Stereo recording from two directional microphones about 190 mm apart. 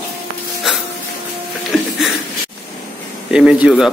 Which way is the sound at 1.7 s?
5° right (ahead or behind).